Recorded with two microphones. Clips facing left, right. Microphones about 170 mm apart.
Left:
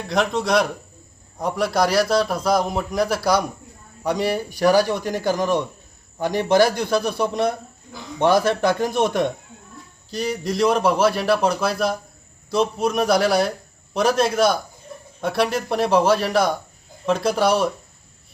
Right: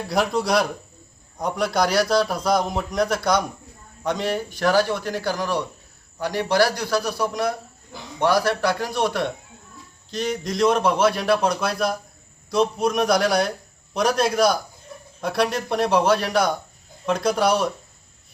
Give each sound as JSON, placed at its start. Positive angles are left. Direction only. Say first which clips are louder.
{"t": 0.1, "sound": "a man's voice", "louder": "left 1 dB", "side_deg": -5}
{"t": 10.1, "sound": "a man's voice", "louder": "left 1 dB", "side_deg": 10}